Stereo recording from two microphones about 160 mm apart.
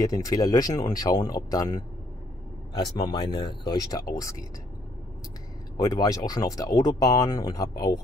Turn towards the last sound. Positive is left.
turn(degrees=20)  # may be behind; listen again after turning